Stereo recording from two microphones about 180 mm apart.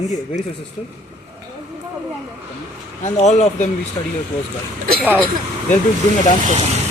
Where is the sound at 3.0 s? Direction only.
40° left (ahead or behind).